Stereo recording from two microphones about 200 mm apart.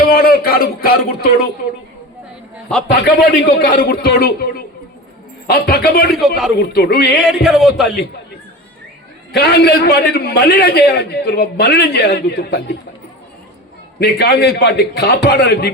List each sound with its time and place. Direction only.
0.0 s a man's voice: 50° left (ahead or behind)
3.0 s a man's voice: 55° left (ahead or behind)
6.2 s speech: centre (ahead or behind)
6.6 s a man's voice: 50° left (ahead or behind)
7.2 s speech: centre (ahead or behind)
9.3 s a man's voice: 55° left (ahead or behind)
14.0 s a man's voice: 50° left (ahead or behind)